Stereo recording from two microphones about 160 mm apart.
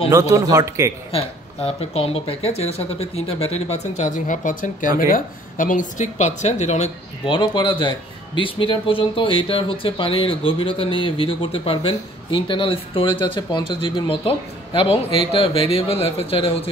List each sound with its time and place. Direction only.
0.1 s speech: 20° right (ahead or behind)
1.1 s speech: 35° left (ahead or behind)
7.3 s speech: 30° left (ahead or behind)